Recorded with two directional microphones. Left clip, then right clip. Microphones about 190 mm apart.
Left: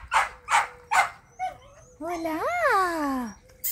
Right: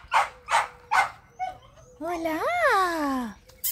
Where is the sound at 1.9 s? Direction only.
5° right (ahead or behind).